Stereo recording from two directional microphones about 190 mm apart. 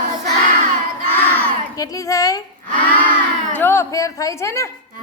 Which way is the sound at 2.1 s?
15° left (ahead or behind).